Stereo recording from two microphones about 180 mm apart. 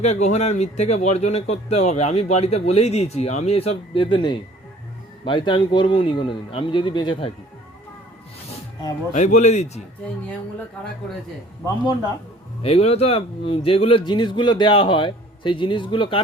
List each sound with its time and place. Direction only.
0.0 s speech: 40° left (ahead or behind)
9.1 s speech: 40° left (ahead or behind)
12.6 s speech: 35° left (ahead or behind)